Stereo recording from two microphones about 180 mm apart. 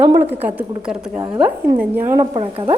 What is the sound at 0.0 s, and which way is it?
A woman's voice, 10° right (ahead or behind).